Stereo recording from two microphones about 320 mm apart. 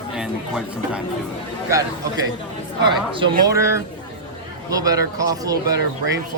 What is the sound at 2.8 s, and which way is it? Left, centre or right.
A woman's voice, centre.